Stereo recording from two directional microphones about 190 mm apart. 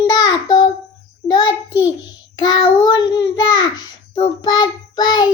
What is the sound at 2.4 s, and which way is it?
Child singing, 25° left (ahead or behind).